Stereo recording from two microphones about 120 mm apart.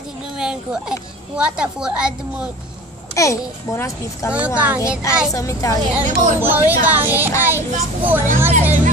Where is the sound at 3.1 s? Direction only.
25° left (ahead or behind).